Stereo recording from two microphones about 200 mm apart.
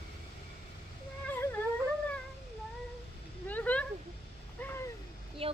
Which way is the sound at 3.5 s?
10° left (ahead or behind).